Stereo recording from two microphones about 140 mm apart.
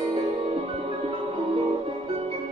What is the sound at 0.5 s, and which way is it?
Music, 40° right (ahead or behind).